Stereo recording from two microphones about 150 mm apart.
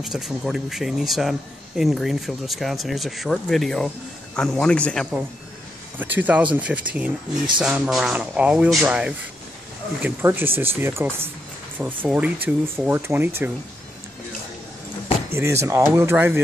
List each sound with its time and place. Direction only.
0.0 s speech: 5° right (ahead or behind)
5.9 s speech: 10° right (ahead or behind)
15.3 s speech: 20° right (ahead or behind)